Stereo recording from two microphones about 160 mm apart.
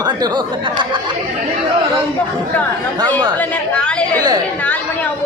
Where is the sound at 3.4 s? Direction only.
5° left (ahead or behind).